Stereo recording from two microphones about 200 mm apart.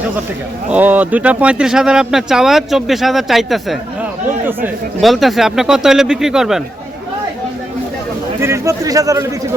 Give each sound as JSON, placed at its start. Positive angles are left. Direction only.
{"t": 0.7, "sound": "speech", "side_deg": -10}
{"t": 4.9, "sound": "speech", "side_deg": 0}
{"t": 8.4, "sound": "a man's voice", "side_deg": -15}